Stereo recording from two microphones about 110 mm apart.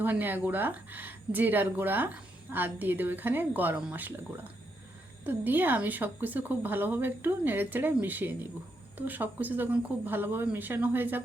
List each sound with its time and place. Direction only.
0.0 s speech: 15° right (ahead or behind)